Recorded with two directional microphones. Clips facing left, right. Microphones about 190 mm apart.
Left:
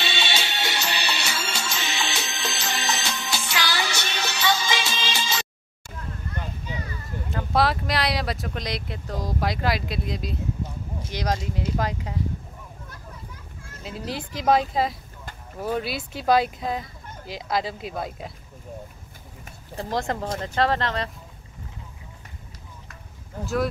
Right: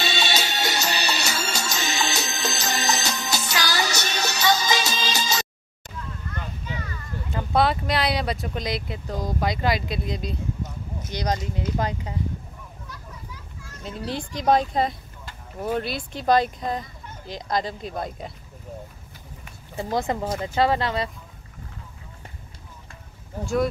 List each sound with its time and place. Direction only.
0.0 s music: 40° right (ahead or behind)
7.3 s speech: centre (ahead or behind)
13.8 s speech: 5° left (ahead or behind)
19.7 s speech: centre (ahead or behind)
23.4 s speech: centre (ahead or behind)